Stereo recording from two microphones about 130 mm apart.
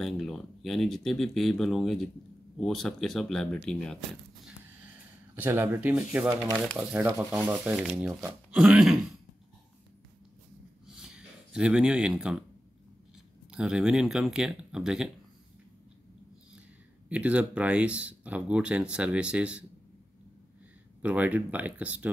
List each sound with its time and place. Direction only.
0.0 s speech: centre (ahead or behind)
5.3 s speech: 15° right (ahead or behind)
11.0 s a sound: 5° right (ahead or behind)
13.5 s speech: 5° right (ahead or behind)
17.1 s speech: 10° right (ahead or behind)
21.0 s speech: 10° right (ahead or behind)